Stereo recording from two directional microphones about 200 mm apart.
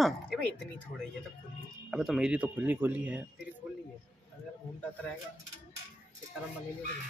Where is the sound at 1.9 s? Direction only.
Centre (ahead or behind).